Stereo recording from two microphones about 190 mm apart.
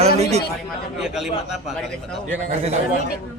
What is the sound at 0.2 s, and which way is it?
Speech, 35° right (ahead or behind).